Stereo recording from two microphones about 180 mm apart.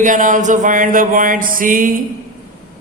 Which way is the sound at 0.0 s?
45° right (ahead or behind).